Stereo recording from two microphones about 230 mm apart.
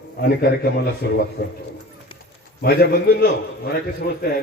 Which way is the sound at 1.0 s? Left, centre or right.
Left.